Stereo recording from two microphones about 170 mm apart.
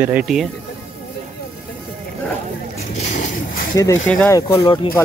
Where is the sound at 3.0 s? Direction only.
45° left (ahead or behind).